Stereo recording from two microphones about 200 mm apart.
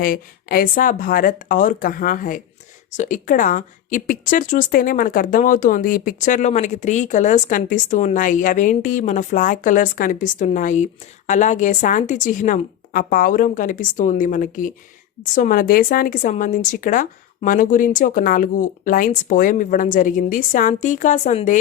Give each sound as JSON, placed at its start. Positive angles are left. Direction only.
{"t": 0.0, "sound": "a woman's voice", "side_deg": 45}